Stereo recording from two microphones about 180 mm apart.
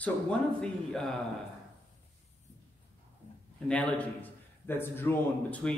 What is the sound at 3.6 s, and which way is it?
A man's voice, 10° left (ahead or behind).